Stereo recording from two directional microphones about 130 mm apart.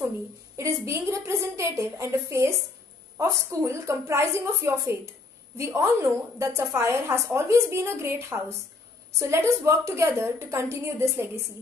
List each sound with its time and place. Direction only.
0.6 s a woman's voice: 20° right (ahead or behind)